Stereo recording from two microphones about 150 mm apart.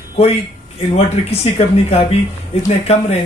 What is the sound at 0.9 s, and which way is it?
Speech, 40° left (ahead or behind).